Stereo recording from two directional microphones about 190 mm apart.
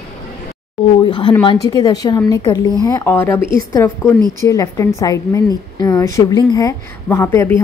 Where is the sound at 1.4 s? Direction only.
20° left (ahead or behind).